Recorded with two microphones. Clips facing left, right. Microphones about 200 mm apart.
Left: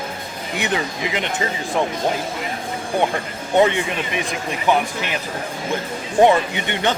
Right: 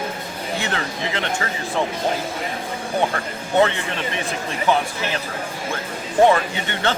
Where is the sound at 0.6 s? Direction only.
15° left (ahead or behind).